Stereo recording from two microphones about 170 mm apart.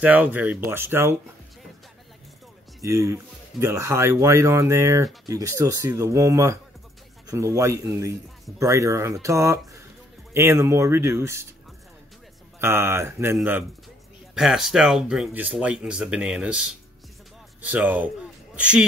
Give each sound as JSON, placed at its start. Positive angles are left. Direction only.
{"t": 0.0, "sound": "speech", "side_deg": -10}
{"t": 2.8, "sound": "speech", "side_deg": -15}
{"t": 12.5, "sound": "speech", "side_deg": -15}